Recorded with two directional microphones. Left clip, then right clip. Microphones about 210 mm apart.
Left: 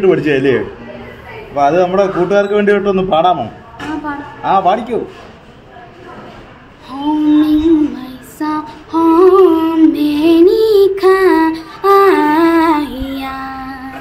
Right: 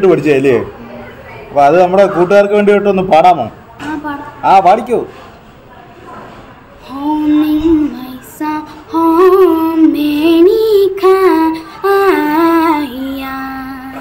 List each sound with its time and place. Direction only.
0.0 s a man's voice: 25° right (ahead or behind)
7.4 s humming: 5° right (ahead or behind)